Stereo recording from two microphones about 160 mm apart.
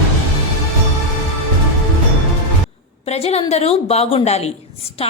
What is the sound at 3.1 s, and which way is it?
A woman's voice, 40° left (ahead or behind).